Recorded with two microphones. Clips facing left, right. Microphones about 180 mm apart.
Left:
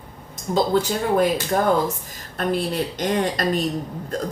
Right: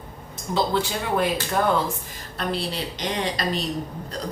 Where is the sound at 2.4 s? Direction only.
50° left (ahead or behind).